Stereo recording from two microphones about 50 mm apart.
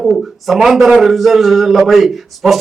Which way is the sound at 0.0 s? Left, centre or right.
Centre.